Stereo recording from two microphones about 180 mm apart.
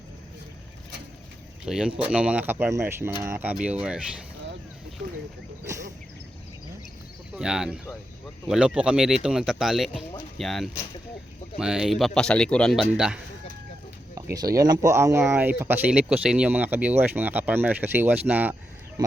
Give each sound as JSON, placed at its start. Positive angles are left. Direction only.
{"t": 1.6, "sound": "speech", "side_deg": -5}
{"t": 5.0, "sound": "speech", "side_deg": -40}
{"t": 7.3, "sound": "a man's voice", "side_deg": -5}
{"t": 14.2, "sound": "speech", "side_deg": -20}